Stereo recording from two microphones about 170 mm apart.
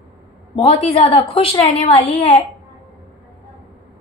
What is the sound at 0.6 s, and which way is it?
A woman's voice, 35° left (ahead or behind).